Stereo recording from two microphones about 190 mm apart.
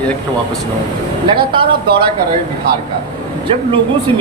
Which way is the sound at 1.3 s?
25° right (ahead or behind).